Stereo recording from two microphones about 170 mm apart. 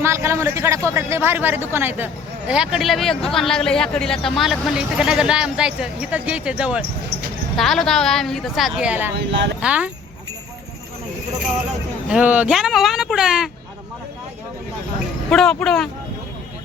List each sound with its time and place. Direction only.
0.0 s a man's voice: 15° right (ahead or behind)
9.1 s speech: 90° right
9.6 s speech: 5° right (ahead or behind)
12.0 s speech: 5° right (ahead or behind)
15.3 s speech: 5° left (ahead or behind)